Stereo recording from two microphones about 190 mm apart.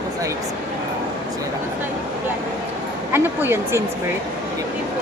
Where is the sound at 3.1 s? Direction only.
10° right (ahead or behind).